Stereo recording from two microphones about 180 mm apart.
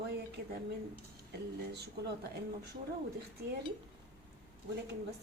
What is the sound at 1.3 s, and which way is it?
Speech, 65° right (ahead or behind).